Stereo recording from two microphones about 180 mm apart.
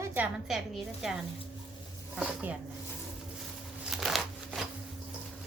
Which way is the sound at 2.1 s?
5° right (ahead or behind).